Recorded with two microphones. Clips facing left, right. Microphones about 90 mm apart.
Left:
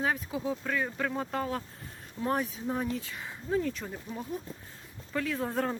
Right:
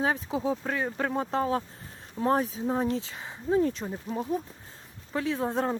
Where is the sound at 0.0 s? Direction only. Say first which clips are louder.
Right 3 dB; 30° right (ahead or behind).